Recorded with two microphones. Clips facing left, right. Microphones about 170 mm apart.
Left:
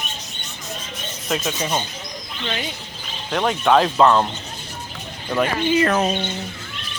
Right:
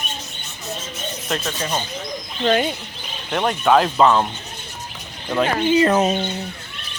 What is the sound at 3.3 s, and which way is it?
Speech, centre (ahead or behind).